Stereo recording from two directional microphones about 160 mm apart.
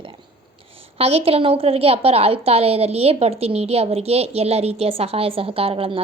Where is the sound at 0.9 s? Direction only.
40° right (ahead or behind).